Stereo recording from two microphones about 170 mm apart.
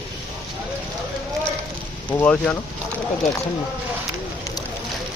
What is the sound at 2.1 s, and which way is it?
Speech, 10° left (ahead or behind).